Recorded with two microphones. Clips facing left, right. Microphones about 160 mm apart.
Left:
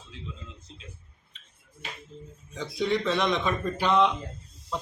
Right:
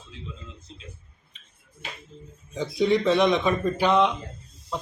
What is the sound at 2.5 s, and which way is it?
Speech, 10° right (ahead or behind).